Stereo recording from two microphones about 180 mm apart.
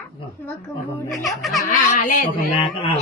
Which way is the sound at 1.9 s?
50° left (ahead or behind).